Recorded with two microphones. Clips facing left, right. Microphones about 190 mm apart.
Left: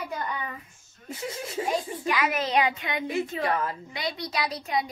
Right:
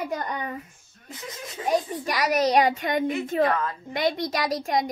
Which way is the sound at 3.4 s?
25° left (ahead or behind).